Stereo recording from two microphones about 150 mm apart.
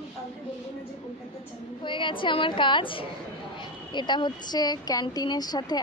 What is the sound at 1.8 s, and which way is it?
A woman's voice, 35° left (ahead or behind).